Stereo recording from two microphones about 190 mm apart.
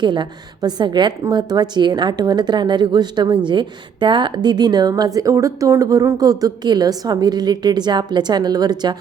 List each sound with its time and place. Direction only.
0.0 s a woman's voice: 25° right (ahead or behind)